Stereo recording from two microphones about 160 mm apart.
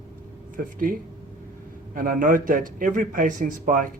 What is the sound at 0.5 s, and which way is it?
Speech, 60° right (ahead or behind).